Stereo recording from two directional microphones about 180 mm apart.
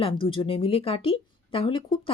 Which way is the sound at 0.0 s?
30° left (ahead or behind).